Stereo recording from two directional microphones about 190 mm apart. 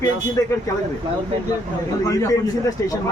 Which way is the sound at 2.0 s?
15° left (ahead or behind).